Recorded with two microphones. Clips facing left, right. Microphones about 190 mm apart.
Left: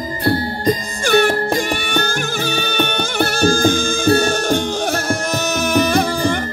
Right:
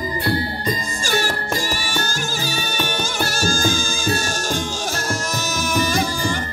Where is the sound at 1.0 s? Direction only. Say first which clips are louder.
Left 10 dB; 60° left (ahead or behind).